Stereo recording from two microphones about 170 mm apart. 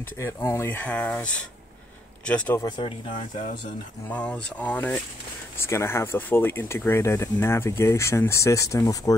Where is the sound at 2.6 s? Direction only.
25° left (ahead or behind).